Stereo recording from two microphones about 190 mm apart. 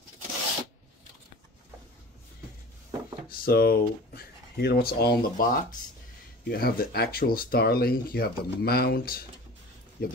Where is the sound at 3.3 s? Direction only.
50° left (ahead or behind).